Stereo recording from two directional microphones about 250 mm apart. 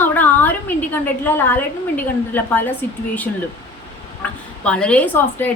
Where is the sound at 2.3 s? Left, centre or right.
Centre.